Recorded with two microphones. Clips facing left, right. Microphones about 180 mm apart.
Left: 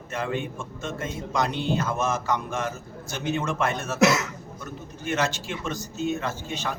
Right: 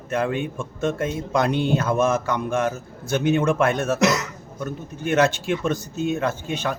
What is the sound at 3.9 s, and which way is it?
Speech, centre (ahead or behind).